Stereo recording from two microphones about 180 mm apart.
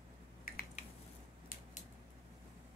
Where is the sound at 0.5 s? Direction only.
55° left (ahead or behind).